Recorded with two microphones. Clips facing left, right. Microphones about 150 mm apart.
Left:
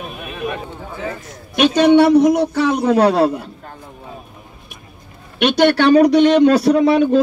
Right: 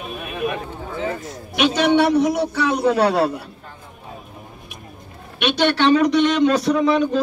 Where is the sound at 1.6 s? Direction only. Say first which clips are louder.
Left 5 dB; 55° left (ahead or behind).